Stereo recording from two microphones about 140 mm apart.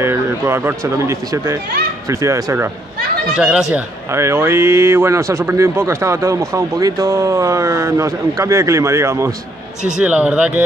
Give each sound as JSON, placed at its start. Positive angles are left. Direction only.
{"t": 0.0, "sound": "speech", "side_deg": -20}
{"t": 3.3, "sound": "speech", "side_deg": -5}
{"t": 3.7, "sound": "speech", "side_deg": -20}
{"t": 9.8, "sound": "speech", "side_deg": -5}